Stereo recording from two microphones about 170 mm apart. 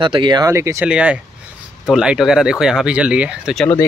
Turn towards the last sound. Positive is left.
turn(degrees=0)  # may be behind; listen again after turning